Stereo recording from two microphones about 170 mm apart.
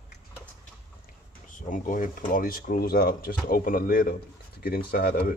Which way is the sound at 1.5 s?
50° left (ahead or behind).